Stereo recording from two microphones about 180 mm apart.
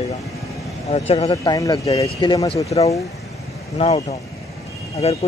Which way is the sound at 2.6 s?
35° left (ahead or behind).